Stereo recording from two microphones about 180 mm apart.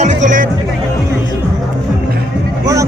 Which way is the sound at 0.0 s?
45° right (ahead or behind).